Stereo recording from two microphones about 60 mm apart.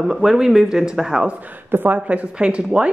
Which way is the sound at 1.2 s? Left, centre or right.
Right.